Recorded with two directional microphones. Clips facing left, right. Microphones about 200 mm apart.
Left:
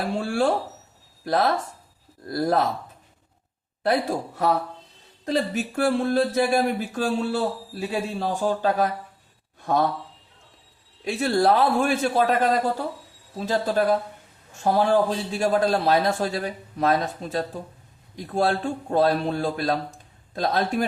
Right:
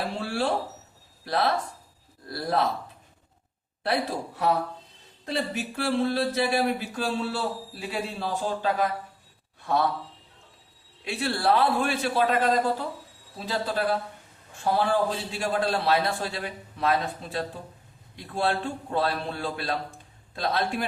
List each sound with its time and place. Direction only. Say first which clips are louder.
0.2 s speech: left 5 dB; 45° left (ahead or behind)
3.8 s speech: left 4 dB; 45° left (ahead or behind)
9.6 s a sound: left 3 dB; 45° left (ahead or behind)
11.0 s speech: left 6 dB; 45° left (ahead or behind)
13.4 s a man's voice: left 5 dB; 45° left (ahead or behind)